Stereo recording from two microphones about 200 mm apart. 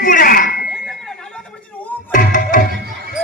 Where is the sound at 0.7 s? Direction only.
Centre (ahead or behind).